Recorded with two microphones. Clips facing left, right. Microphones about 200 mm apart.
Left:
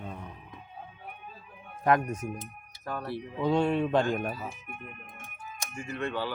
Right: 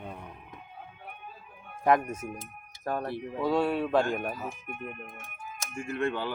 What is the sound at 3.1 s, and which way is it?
Speech, 50° right (ahead or behind).